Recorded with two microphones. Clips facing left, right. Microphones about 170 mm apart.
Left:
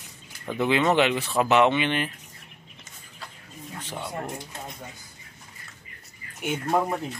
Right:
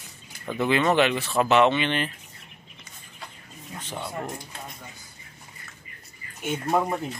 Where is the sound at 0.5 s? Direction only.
15° left (ahead or behind).